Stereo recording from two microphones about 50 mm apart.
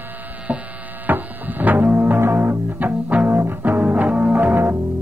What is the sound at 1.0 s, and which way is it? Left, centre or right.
Music, right.